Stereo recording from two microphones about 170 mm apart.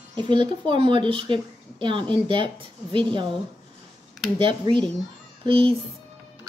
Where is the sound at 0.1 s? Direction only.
30° right (ahead or behind).